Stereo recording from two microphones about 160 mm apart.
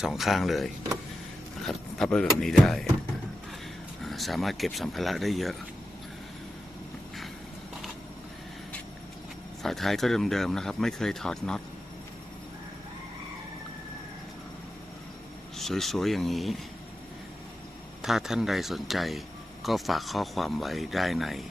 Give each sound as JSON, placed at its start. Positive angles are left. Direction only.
{"t": 0.0, "sound": "speech", "side_deg": 0}
{"t": 4.0, "sound": "speech", "side_deg": 0}
{"t": 9.6, "sound": "speech", "side_deg": 0}
{"t": 15.5, "sound": "speech", "side_deg": 0}
{"t": 18.0, "sound": "speech", "side_deg": 0}